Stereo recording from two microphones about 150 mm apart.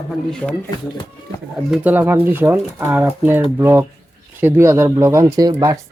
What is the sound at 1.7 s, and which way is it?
Speech, 10° right (ahead or behind).